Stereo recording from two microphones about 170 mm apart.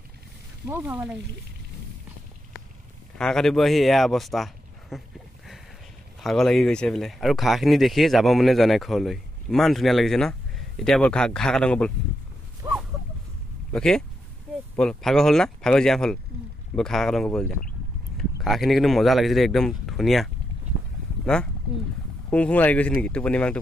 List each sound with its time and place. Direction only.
0.7 s frying: 15° right (ahead or behind)
3.2 s speech: 5° left (ahead or behind)
6.2 s speech: centre (ahead or behind)
12.6 s a sound: 15° right (ahead or behind)
13.7 s speech: 5° left (ahead or behind)
21.3 s speech: 5° left (ahead or behind)